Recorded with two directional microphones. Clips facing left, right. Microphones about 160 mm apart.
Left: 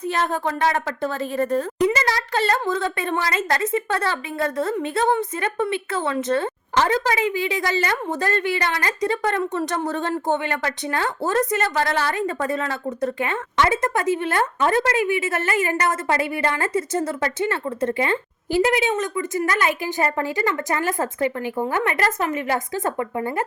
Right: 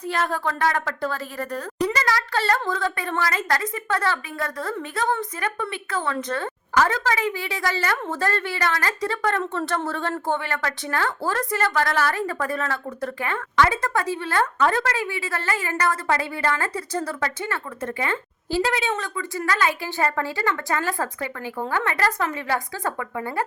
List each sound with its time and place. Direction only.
0.1 s a woman's voice: 20° left (ahead or behind)